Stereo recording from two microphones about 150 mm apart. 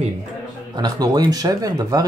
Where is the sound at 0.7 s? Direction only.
30° right (ahead or behind).